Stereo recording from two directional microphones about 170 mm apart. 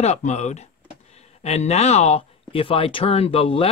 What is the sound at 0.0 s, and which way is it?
Speech, 40° left (ahead or behind).